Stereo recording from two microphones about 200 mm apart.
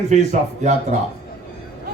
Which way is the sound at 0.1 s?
35° right (ahead or behind).